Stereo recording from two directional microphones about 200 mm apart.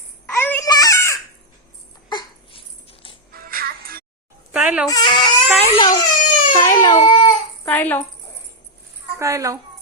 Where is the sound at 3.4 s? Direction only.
50° right (ahead or behind).